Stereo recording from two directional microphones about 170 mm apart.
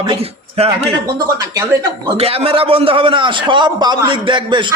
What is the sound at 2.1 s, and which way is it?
A man's voice, 35° right (ahead or behind).